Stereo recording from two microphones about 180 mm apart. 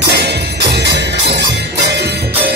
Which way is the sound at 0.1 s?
65° right (ahead or behind).